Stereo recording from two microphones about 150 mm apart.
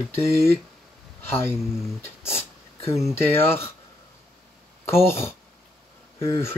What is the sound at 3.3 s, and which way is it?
Speech, 15° left (ahead or behind).